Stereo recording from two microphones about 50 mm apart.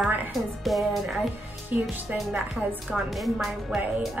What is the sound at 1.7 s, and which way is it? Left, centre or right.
Speech, right.